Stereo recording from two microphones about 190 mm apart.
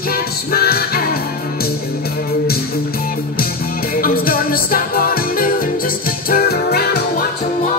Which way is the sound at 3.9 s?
50° left (ahead or behind).